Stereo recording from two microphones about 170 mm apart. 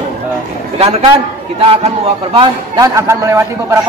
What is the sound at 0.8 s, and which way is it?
A man's voice, 35° right (ahead or behind).